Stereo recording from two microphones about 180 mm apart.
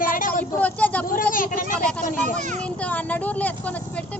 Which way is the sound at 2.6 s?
5° left (ahead or behind).